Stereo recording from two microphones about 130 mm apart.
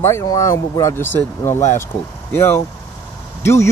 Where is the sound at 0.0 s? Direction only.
25° left (ahead or behind).